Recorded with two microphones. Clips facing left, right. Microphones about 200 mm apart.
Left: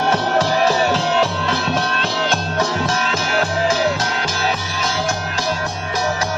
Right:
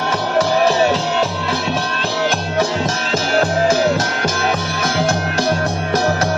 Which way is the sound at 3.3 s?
45° right (ahead or behind).